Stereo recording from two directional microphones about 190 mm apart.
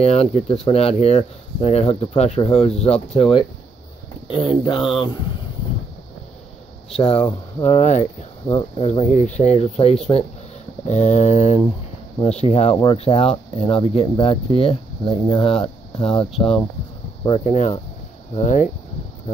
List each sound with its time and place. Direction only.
0.0 s speech: 30° left (ahead or behind)
7.0 s speech: 30° left (ahead or behind)
8.5 s speech: 20° left (ahead or behind)
8.8 s speech: 40° left (ahead or behind)
18.4 s speech: 40° left (ahead or behind)